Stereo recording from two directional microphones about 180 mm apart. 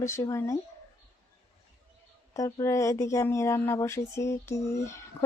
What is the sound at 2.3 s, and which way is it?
Speech, 20° left (ahead or behind).